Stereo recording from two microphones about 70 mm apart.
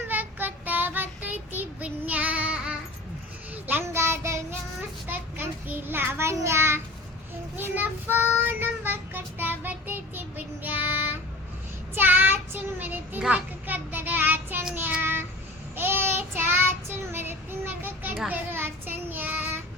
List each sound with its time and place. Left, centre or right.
0.1 s child singing: right
3.9 s child singing: right
5.0 s child singing: right
12.8 s a sound: right
13.3 s child singing: right
17.8 s children playing: right
18.3 s child singing: right